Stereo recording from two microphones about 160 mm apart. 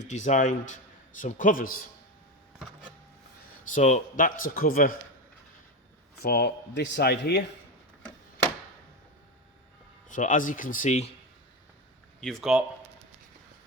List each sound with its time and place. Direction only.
0.1 s speech: 45° left (ahead or behind)
3.8 s speech: 50° left (ahead or behind)
6.1 s speech: 75° left (ahead or behind)
10.1 s speech: 55° left (ahead or behind)
12.2 s speech: centre (ahead or behind)